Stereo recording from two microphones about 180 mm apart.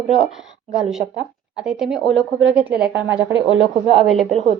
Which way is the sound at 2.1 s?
90° right.